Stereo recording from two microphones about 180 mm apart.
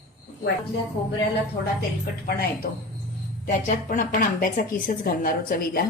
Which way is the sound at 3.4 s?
45° left (ahead or behind).